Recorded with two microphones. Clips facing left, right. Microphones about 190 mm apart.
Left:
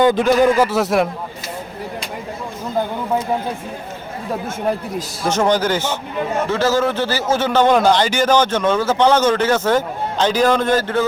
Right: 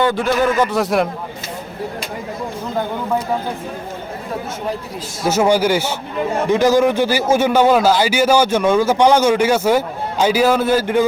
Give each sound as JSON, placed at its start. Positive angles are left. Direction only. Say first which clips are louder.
{"t": 0.0, "sound": "speech", "louder": "left 3 dB", "side_deg": 15}
{"t": 5.2, "sound": "a man's voice", "louder": "right 2 dB", "side_deg": -5}